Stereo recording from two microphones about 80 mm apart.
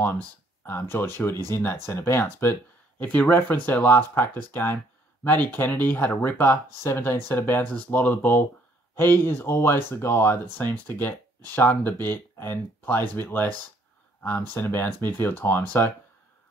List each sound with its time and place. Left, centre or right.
0.7 s speech: left
3.0 s speech: centre